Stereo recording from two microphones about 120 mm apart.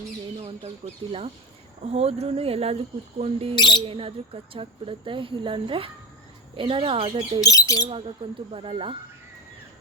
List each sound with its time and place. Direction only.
1.8 s speech: 60° right (ahead or behind)
3.5 s speech: 40° left (ahead or behind)
3.8 s speech: 50° right (ahead or behind)
7.4 s speech: 30° left (ahead or behind)
7.9 s speech: 50° right (ahead or behind)